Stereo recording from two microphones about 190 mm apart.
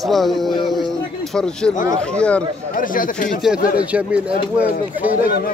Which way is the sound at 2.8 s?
45° left (ahead or behind).